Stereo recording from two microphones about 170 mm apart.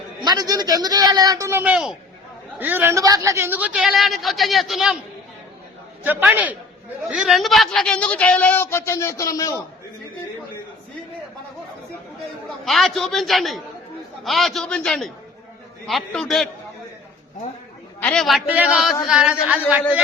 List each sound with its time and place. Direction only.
0.3 s a man's voice: 25° right (ahead or behind); by 4.9 s centre (ahead or behind)
6.0 s a man's voice: 10° right (ahead or behind); by 9.6 s 20° left (ahead or behind)
12.6 s a man's voice: centre (ahead or behind)
18.0 s a man's voice: 5° left (ahead or behind)